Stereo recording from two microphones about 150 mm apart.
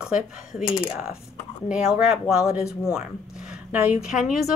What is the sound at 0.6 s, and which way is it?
Speech, 35° left (ahead or behind).